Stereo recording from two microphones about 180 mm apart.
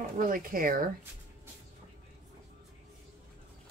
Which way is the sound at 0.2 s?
50° right (ahead or behind).